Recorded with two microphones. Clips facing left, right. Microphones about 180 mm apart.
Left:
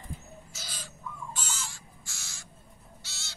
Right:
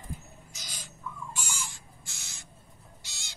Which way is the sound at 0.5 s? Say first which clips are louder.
Left 3 dB; 15° right (ahead or behind).